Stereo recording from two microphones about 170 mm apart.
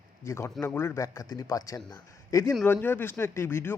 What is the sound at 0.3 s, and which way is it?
A man's voice, 15° left (ahead or behind).